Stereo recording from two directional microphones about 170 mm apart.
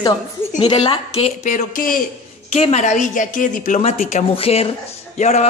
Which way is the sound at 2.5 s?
40° left (ahead or behind).